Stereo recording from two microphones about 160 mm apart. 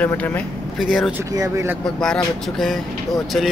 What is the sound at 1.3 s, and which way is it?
Speech, 20° right (ahead or behind).